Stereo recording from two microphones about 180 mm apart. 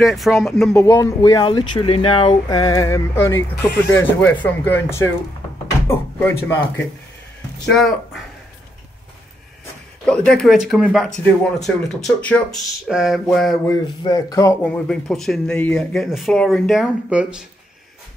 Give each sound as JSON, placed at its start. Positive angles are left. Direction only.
{"t": 0.0, "sound": "speech", "side_deg": 0}
{"t": 0.7, "sound": "speech", "side_deg": 15}
{"t": 7.7, "sound": "speech", "side_deg": 0}
{"t": 10.0, "sound": "speech", "side_deg": 5}
{"t": 13.7, "sound": "speech", "side_deg": 20}